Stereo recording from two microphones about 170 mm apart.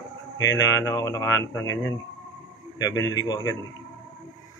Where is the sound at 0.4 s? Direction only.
20° left (ahead or behind).